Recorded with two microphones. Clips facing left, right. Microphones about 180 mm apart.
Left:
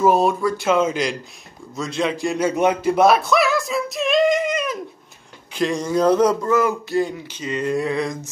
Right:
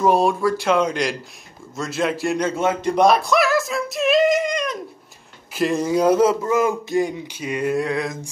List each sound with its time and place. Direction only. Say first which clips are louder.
0.0 s speech: even; centre (ahead or behind)
2.4 s a man's voice: left 5 dB; 15° left (ahead or behind)
2.8 s female singing: right 2 dB; 5° left (ahead or behind)
5.5 s a sound: right 1 dB; 5° right (ahead or behind)
7.7 s speech: left 1 dB; centre (ahead or behind)